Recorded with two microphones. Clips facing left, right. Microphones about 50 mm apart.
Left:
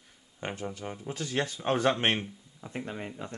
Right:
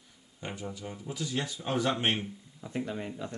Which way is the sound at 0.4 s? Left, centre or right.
Left.